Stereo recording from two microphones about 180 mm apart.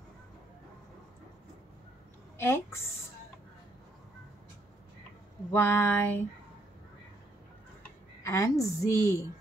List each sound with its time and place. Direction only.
2.3 s a woman's voice: 15° left (ahead or behind)
5.5 s a woman's voice: 10° left (ahead or behind)
8.2 s a woman's voice: 15° left (ahead or behind)